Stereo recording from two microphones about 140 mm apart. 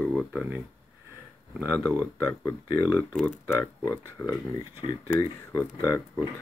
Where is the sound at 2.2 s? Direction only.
25° left (ahead or behind).